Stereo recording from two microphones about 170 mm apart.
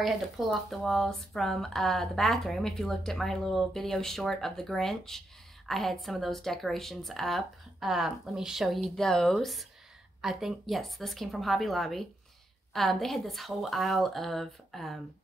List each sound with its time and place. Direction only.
0.0 s speech: centre (ahead or behind)